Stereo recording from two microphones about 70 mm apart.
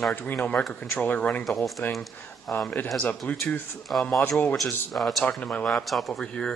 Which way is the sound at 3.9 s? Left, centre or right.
Centre.